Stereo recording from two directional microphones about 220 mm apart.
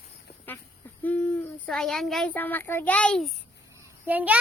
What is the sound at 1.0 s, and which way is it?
A child's voice, 10° left (ahead or behind).